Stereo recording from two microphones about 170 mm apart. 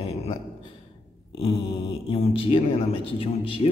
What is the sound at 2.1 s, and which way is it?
A man's voice, 35° left (ahead or behind).